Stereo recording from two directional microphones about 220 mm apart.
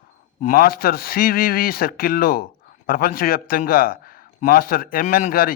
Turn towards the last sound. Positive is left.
turn(degrees=40)  # may be behind; listen again after turning